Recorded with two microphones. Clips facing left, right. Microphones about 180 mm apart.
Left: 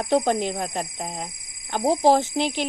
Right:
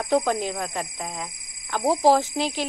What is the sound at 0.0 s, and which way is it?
Speech, 25° left (ahead or behind).